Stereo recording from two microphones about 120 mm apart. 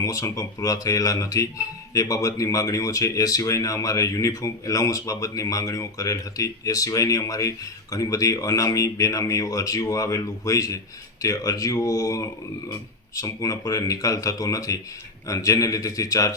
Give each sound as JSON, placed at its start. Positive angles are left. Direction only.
{"t": 0.0, "sound": "speech", "side_deg": 30}